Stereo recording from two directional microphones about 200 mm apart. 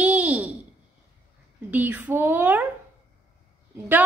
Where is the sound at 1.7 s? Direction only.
10° right (ahead or behind).